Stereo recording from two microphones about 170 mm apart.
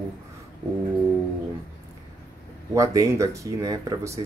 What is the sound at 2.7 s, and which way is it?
Speech, 20° right (ahead or behind).